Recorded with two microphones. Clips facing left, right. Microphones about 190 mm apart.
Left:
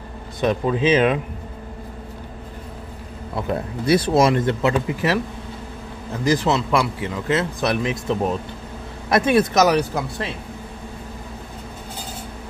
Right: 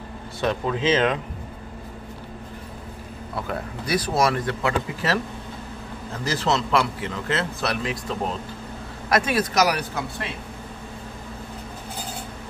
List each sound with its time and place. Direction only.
0.4 s a man's voice: 15° left (ahead or behind)
3.3 s speech: 25° left (ahead or behind)
6.2 s a man's voice: 15° left (ahead or behind)